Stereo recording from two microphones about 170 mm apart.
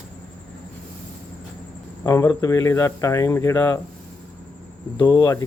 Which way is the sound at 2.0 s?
15° left (ahead or behind).